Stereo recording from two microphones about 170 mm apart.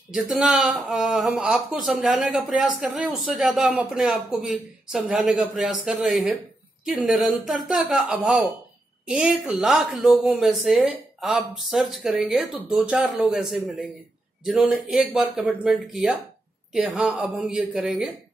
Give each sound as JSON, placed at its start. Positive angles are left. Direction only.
{"t": 0.1, "sound": "a woman's voice", "side_deg": -5}